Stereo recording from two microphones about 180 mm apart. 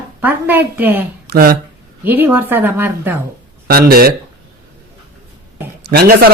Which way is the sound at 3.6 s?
55° right (ahead or behind).